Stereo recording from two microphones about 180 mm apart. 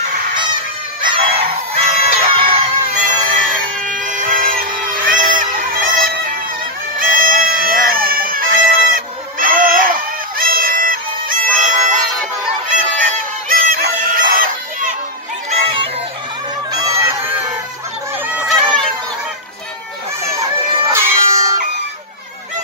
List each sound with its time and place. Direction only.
1.0 s fowl: 25° right (ahead or behind)
2.0 s chicken: 30° right (ahead or behind)
2.9 s music: 40° right (ahead or behind)
3.3 s a sound: 45° right (ahead or behind)
7.0 s bagpipes: 50° right (ahead or behind)
10.3 s music: 50° right (ahead or behind)
16.8 s fowl: 15° right (ahead or behind)
18.2 s a sound: 10° right (ahead or behind)
20.9 s cat: 15° right (ahead or behind)